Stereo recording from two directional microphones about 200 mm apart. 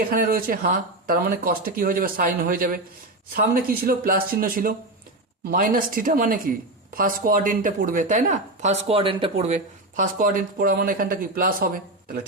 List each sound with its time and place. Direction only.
0.1 s speech: 45° right (ahead or behind)